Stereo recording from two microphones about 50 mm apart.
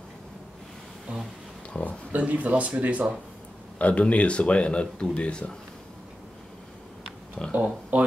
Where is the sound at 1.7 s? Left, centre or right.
Left.